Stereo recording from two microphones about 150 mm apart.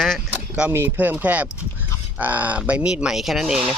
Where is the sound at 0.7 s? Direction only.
15° right (ahead or behind).